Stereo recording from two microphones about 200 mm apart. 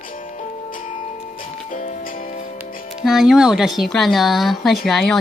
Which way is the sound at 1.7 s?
40° left (ahead or behind).